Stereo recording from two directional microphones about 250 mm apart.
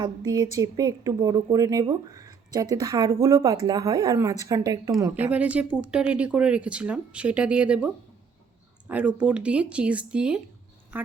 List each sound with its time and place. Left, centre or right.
0.0 s a woman's voice: centre
8.9 s a woman's voice: centre